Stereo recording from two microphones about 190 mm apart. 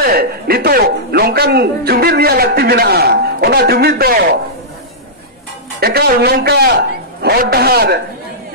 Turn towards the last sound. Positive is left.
turn(degrees=-55)  # may be behind; listen again after turning